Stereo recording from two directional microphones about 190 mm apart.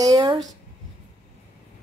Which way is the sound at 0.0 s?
20° right (ahead or behind).